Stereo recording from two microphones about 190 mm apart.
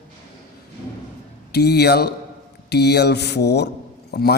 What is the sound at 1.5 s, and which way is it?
A man's voice, 60° left (ahead or behind).